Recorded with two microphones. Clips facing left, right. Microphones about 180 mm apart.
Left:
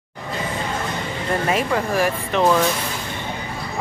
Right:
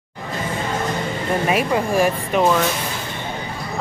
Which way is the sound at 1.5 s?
15° right (ahead or behind).